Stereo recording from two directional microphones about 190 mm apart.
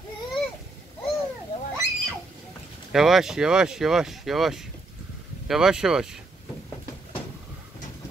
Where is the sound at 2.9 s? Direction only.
Centre (ahead or behind).